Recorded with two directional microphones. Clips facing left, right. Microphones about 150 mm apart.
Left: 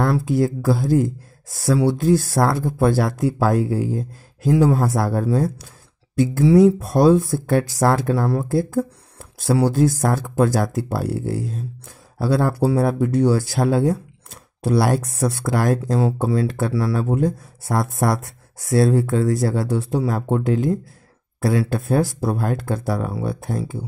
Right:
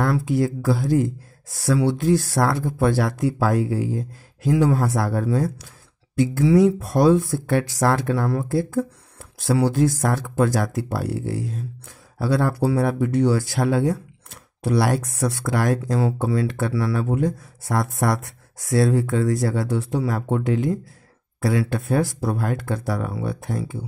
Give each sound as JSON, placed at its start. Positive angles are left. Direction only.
{"t": 0.0, "sound": "speech", "side_deg": 35}
{"t": 6.4, "sound": "speech", "side_deg": 25}